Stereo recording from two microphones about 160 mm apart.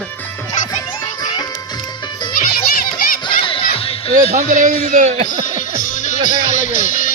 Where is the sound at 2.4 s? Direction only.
60° left (ahead or behind).